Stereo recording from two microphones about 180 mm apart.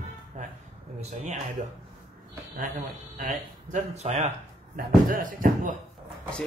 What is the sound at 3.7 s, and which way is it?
Speech, 40° right (ahead or behind).